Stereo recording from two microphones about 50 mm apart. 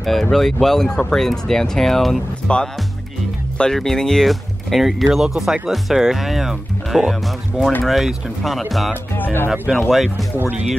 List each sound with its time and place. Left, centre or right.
0.0 s speech: centre
2.4 s speech: centre
3.7 s speech: centre
9.1 s speech: left
9.5 s speech: centre